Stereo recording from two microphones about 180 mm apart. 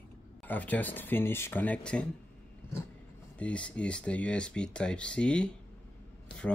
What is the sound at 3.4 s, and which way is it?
Speech, 5° left (ahead or behind).